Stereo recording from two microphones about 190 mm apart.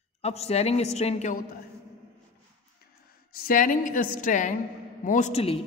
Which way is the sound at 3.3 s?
45° left (ahead or behind).